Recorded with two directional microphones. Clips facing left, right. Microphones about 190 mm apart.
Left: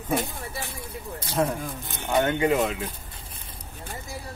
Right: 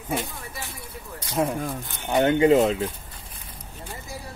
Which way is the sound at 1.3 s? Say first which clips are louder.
Even; 30° left (ahead or behind).